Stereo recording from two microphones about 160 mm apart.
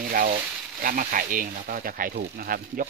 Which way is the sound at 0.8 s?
60° right (ahead or behind).